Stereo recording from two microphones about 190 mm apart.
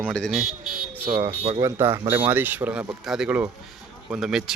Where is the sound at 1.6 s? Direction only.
15° right (ahead or behind).